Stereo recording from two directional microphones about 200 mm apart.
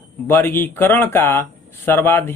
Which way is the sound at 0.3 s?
10° left (ahead or behind).